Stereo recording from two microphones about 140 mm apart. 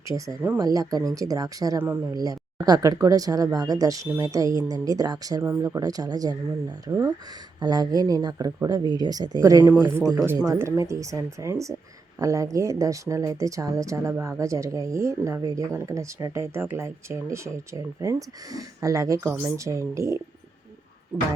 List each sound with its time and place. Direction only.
0.1 s speech: 25° right (ahead or behind)